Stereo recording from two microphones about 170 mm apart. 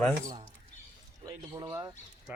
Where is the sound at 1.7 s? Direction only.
10° right (ahead or behind).